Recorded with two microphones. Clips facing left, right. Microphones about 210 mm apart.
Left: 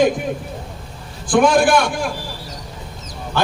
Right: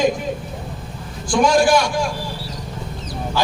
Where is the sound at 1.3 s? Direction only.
55° left (ahead or behind).